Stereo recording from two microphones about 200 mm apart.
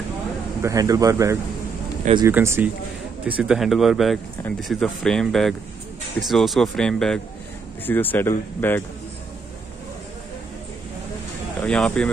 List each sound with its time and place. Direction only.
0.6 s speech: 15° right (ahead or behind); by 8.8 s 10° left (ahead or behind)
11.6 s speech: 5° left (ahead or behind)